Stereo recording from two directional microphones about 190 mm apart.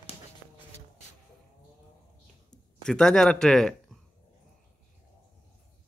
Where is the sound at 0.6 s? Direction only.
35° left (ahead or behind).